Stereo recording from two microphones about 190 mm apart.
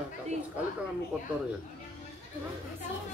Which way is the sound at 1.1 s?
10° right (ahead or behind).